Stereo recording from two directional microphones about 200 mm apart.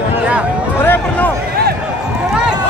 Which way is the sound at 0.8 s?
10° left (ahead or behind).